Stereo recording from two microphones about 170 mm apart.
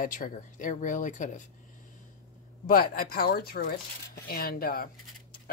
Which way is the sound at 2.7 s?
55° left (ahead or behind).